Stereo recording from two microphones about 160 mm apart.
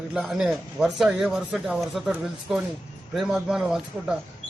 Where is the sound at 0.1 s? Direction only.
Centre (ahead or behind).